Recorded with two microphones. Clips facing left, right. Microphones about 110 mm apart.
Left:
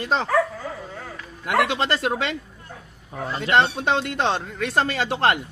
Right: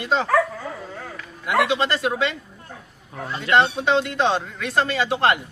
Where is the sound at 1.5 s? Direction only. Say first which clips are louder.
Right 1 dB; 50° left (ahead or behind).